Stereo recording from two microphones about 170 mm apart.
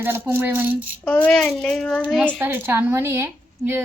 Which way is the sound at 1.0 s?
5° left (ahead or behind).